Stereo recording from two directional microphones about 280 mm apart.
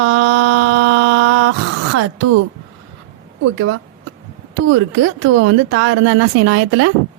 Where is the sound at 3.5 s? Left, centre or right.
Right.